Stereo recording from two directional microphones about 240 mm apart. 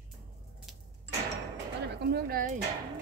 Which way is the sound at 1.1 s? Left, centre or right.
Right.